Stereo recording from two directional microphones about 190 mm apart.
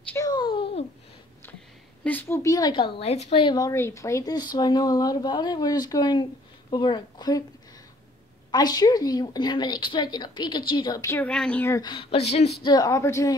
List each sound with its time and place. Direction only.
0.0 s a sound: 10° left (ahead or behind)
0.3 s a sound: 25° left (ahead or behind)
2.0 s a woman's voice: 10° left (ahead or behind)
8.5 s a woman's voice: 20° left (ahead or behind)
11.8 s speech: 25° left (ahead or behind)
12.6 s a woman's voice: 20° left (ahead or behind)